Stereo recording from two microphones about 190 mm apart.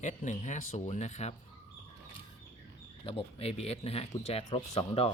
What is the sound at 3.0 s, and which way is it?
Speech, 30° left (ahead or behind).